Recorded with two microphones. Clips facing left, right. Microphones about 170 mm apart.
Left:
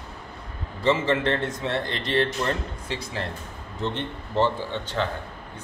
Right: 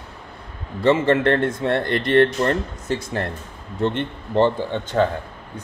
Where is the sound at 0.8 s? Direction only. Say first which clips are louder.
Right 5 dB; 55° right (ahead or behind).